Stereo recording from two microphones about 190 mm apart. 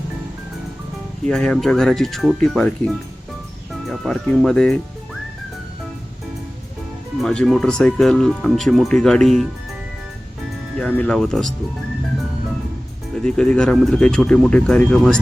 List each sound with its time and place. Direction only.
1.3 s speech: 5° left (ahead or behind)
7.2 s speech: centre (ahead or behind)
10.8 s speech: 5° left (ahead or behind)
13.1 s speech: 5° left (ahead or behind)